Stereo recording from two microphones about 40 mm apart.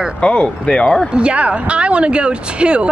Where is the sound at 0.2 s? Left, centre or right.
Left.